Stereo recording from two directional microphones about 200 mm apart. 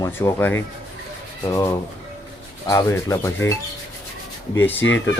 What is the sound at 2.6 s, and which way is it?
Speech, 15° left (ahead or behind).